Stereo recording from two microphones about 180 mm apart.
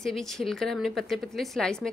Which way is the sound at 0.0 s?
Centre (ahead or behind).